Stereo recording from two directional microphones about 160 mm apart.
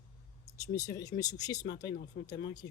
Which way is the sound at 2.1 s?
55° left (ahead or behind).